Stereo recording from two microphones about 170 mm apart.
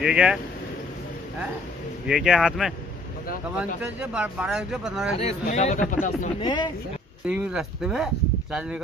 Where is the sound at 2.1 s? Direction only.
5° right (ahead or behind).